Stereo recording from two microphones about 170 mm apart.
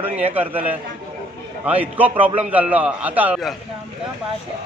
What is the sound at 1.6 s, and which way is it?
A man's voice, 10° right (ahead or behind).